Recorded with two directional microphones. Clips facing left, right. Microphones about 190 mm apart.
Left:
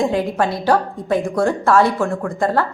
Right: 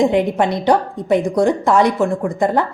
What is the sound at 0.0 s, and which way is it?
A woman's voice, 20° right (ahead or behind).